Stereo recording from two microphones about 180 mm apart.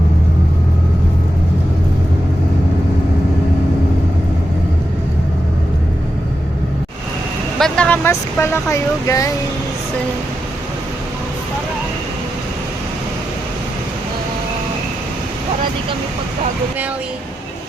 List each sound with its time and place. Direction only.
7.6 s speech: 5° left (ahead or behind)